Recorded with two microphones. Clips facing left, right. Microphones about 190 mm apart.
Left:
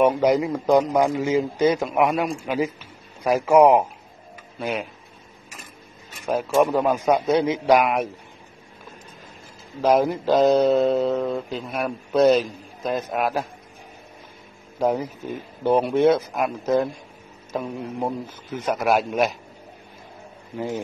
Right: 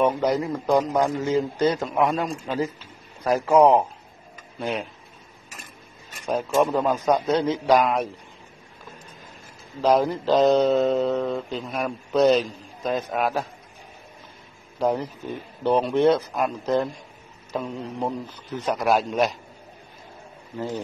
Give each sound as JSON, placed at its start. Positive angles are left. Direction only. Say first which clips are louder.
{"t": 0.0, "sound": "mantra", "louder": "left 3 dB", "side_deg": 15}
{"t": 4.6, "sound": "speech", "louder": "left 1 dB", "side_deg": 0}
{"t": 6.2, "sound": "mantra", "louder": "left 2 dB", "side_deg": 5}
{"t": 9.8, "sound": "mantra", "louder": "left 1 dB", "side_deg": 10}
{"t": 14.8, "sound": "mantra", "louder": "left 1 dB", "side_deg": 10}
{"t": 20.5, "sound": "mantra", "louder": "left 2 dB", "side_deg": 15}